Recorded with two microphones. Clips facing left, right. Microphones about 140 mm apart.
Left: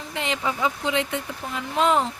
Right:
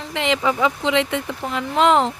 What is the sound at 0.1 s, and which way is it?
Speech, 90° right.